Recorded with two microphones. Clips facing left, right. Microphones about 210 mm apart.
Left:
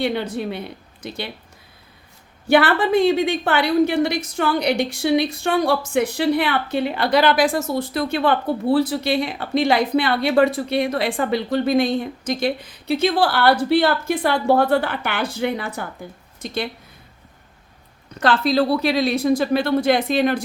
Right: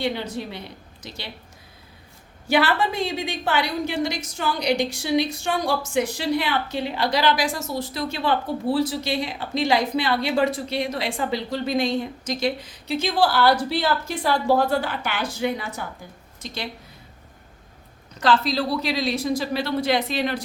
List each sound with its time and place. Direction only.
0.0 s a woman's voice: 60° left (ahead or behind)
2.5 s a woman's voice: 55° left (ahead or behind)
18.2 s a woman's voice: 55° left (ahead or behind)